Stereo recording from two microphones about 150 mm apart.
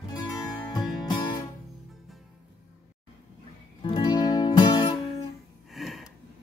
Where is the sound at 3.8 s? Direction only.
30° left (ahead or behind).